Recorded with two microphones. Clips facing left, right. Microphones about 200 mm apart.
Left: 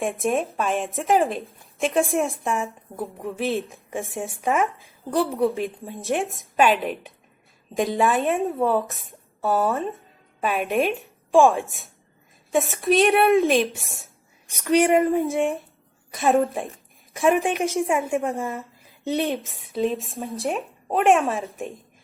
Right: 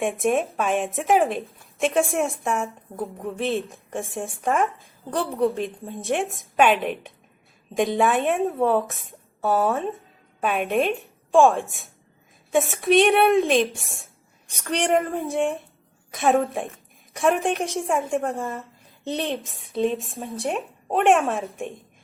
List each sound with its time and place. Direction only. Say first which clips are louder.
0.0 s a woman's voice: right 1 dB; centre (ahead or behind)